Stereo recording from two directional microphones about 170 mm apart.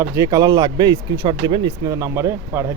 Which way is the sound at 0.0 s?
20° right (ahead or behind).